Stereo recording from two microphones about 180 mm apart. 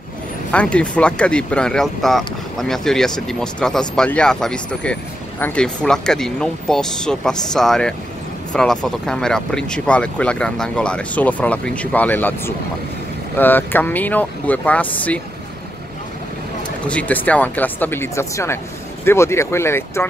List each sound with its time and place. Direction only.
0.5 s speech: 5° left (ahead or behind)
16.8 s speech: 10° left (ahead or behind)